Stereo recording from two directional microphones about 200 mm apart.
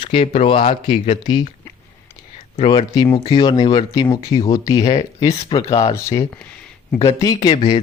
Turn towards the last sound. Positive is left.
turn(degrees=25)  # may be behind; listen again after turning